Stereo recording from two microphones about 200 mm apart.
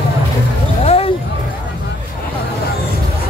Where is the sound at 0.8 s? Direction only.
30° left (ahead or behind).